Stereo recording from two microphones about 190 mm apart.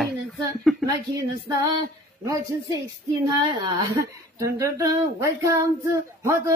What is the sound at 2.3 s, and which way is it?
Speech, 20° right (ahead or behind).